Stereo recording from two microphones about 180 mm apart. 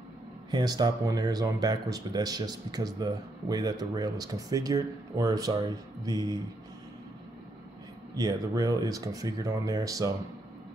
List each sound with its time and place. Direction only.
0.5 s speech: 25° right (ahead or behind)
8.2 s speech: 20° right (ahead or behind)